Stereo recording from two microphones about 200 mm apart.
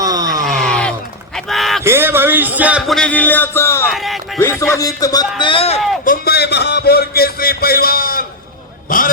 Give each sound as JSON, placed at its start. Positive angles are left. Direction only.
{"t": 0.0, "sound": "a sound", "side_deg": -20}
{"t": 0.4, "sound": "a sound", "side_deg": 5}
{"t": 1.8, "sound": "music", "side_deg": -10}
{"t": 3.8, "sound": "speech", "side_deg": 0}
{"t": 4.4, "sound": "speech", "side_deg": 15}
{"t": 6.1, "sound": "music", "side_deg": 50}